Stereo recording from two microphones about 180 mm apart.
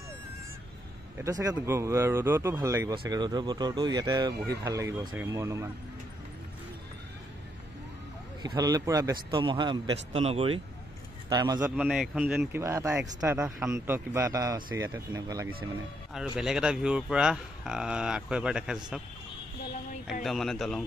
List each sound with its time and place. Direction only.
1.2 s a man's voice: 20° right (ahead or behind)
8.4 s speech: 20° right (ahead or behind)
11.2 s speech: 20° right (ahead or behind)
11.6 s a man's voice: 5° right (ahead or behind)
16.3 s speech: 5° right (ahead or behind)
20.1 s speech: centre (ahead or behind)